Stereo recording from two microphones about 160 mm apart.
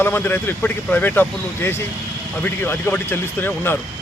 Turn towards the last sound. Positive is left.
turn(degrees=15)  # may be behind; listen again after turning